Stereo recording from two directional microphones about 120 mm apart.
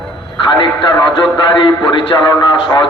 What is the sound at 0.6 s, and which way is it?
Speech, 40° left (ahead or behind).